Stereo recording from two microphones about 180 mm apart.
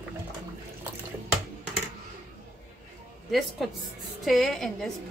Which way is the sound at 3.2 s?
Centre (ahead or behind).